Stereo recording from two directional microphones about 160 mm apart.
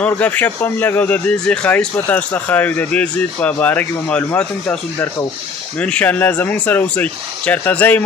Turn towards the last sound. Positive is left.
turn(degrees=10)  # may be behind; listen again after turning